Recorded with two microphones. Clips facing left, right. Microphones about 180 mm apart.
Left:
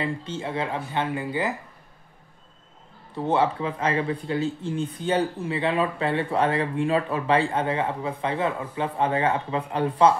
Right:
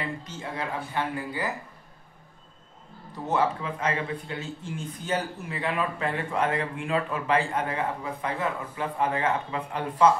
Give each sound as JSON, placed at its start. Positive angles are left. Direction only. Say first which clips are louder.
{"t": 0.2, "sound": "speech", "louder": "left 5 dB", "side_deg": 25}
{"t": 3.3, "sound": "speech", "louder": "left 3 dB", "side_deg": 30}